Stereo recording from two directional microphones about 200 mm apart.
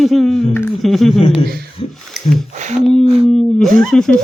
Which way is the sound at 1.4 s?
50° right (ahead or behind).